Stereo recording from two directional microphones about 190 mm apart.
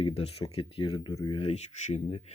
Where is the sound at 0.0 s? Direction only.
30° left (ahead or behind).